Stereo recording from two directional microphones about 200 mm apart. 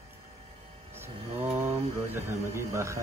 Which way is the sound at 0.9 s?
10° right (ahead or behind).